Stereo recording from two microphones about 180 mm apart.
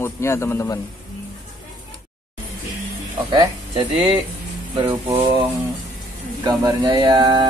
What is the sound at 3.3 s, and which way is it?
Speech, 25° right (ahead or behind).